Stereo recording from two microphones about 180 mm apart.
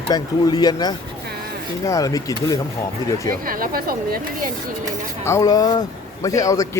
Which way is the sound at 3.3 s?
50° right (ahead or behind).